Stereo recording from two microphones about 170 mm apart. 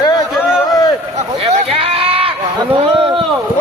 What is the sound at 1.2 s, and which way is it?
Speech, 35° right (ahead or behind).